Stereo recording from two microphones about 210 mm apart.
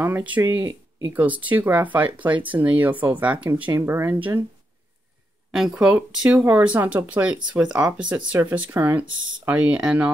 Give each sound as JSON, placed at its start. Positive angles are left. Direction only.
{"t": 0.0, "sound": "speech", "side_deg": -10}
{"t": 5.5, "sound": "speech", "side_deg": 0}